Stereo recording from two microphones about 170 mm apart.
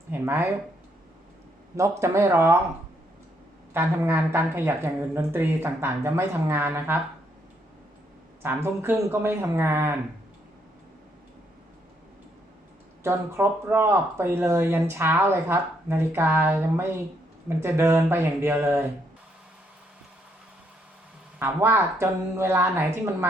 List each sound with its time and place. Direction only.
0.1 s speech: 15° right (ahead or behind)
1.7 s speech: 15° right (ahead or behind)
3.8 s speech: 10° right (ahead or behind)
8.4 s speech: 15° right (ahead or behind)
13.0 s speech: 15° right (ahead or behind)
21.3 s speech: 15° right (ahead or behind)